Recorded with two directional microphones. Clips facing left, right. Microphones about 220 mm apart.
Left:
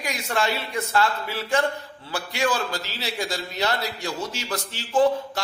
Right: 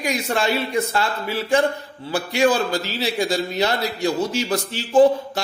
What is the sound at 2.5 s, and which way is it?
Speech, 15° right (ahead or behind).